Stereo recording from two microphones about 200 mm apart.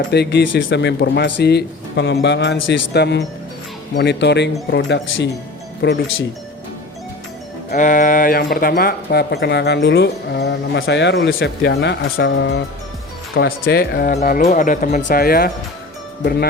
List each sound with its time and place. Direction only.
0.1 s speech: 60° left (ahead or behind)
7.7 s speech: 40° left (ahead or behind)
14.2 s speech: 40° left (ahead or behind)